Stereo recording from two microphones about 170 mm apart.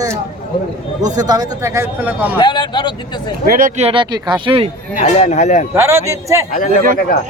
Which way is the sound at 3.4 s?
60° right (ahead or behind).